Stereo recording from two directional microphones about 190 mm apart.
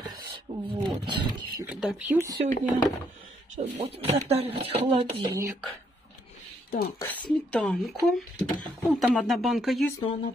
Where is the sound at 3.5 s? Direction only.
35° right (ahead or behind).